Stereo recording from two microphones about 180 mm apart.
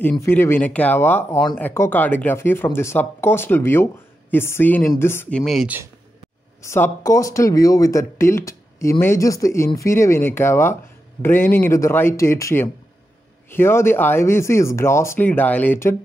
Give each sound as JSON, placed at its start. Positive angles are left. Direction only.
{"t": 0.0, "sound": "speech", "side_deg": 10}
{"t": 5.4, "sound": "speech", "side_deg": 0}
{"t": 6.6, "sound": "speech", "side_deg": 15}